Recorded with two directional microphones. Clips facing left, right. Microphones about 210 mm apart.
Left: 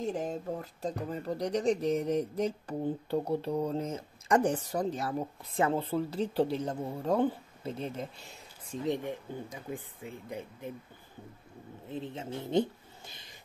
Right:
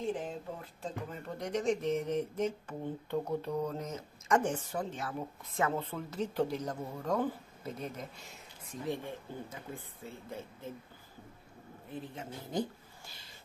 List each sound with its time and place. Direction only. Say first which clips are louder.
0.0 s speech: left 3 dB; 40° left (ahead or behind)
8.8 s speech: left 5 dB; 20° left (ahead or behind)
11.9 s speech: left 5 dB; 25° left (ahead or behind)